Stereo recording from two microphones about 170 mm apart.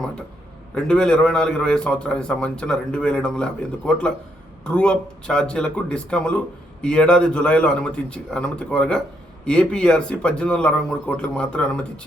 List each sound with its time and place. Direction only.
0.7 s a man's voice: 5° left (ahead or behind)